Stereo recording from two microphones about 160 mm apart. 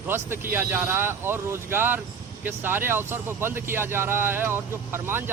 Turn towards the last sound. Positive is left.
turn(degrees=-15)  # may be behind; listen again after turning